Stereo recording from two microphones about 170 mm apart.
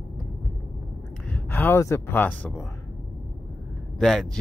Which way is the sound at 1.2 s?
10° left (ahead or behind).